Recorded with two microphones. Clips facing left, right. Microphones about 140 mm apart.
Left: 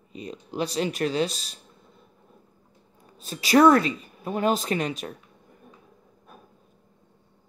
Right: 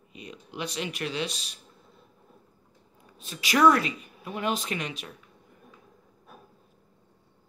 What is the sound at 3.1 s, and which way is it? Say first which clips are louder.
Speech: left 6 dB; 35° left (ahead or behind).